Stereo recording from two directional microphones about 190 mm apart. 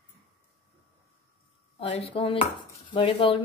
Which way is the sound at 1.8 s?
30° left (ahead or behind).